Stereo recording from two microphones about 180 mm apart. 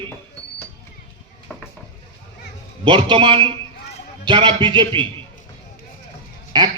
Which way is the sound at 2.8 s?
30° right (ahead or behind).